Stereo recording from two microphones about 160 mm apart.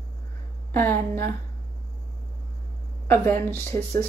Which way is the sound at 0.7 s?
10° left (ahead or behind).